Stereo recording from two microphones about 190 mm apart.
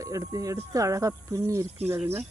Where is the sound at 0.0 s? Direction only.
15° right (ahead or behind).